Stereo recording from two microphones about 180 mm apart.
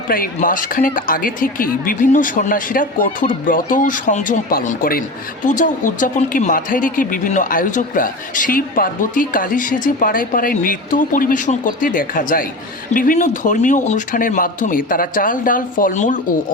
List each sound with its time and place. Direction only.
0.1 s speech: 50° left (ahead or behind)